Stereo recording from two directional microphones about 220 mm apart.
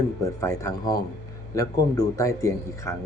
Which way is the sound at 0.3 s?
10° left (ahead or behind).